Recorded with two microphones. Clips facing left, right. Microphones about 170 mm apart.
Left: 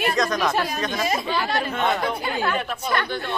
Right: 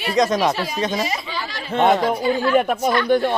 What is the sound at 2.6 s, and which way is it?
Speech, 50° right (ahead or behind).